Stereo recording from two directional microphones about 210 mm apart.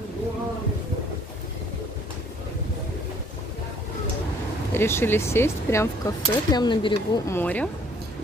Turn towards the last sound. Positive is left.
turn(degrees=5)  # may be behind; listen again after turning